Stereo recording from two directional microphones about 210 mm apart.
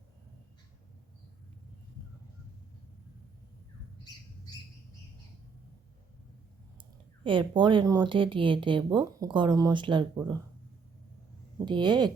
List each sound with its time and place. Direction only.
7.3 s speech: 25° right (ahead or behind)
11.6 s speech: 20° right (ahead or behind)